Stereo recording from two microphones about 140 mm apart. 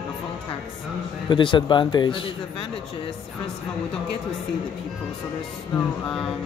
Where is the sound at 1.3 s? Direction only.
35° left (ahead or behind).